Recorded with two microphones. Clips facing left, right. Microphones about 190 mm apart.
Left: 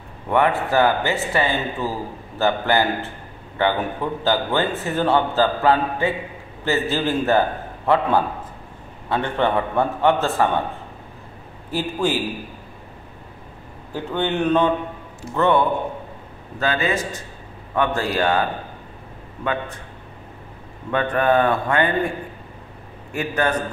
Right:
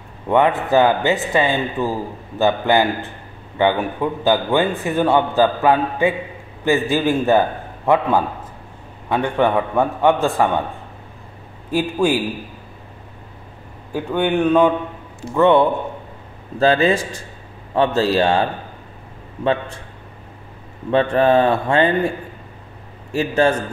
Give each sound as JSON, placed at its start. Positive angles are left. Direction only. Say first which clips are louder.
{"t": 0.3, "sound": "a man's voice", "louder": "right 3 dB", "side_deg": -20}
{"t": 11.7, "sound": "a man's voice", "louder": "right 4 dB", "side_deg": -15}
{"t": 13.9, "sound": "a man's voice", "louder": "right 4 dB", "side_deg": -15}
{"t": 16.5, "sound": "speech", "louder": "right 7 dB", "side_deg": -30}
{"t": 19.4, "sound": "speech", "louder": "right 5 dB", "side_deg": -30}
{"t": 20.9, "sound": "speech", "louder": "right 4 dB", "side_deg": -25}
{"t": 23.1, "sound": "speech", "louder": "right 6 dB", "side_deg": -25}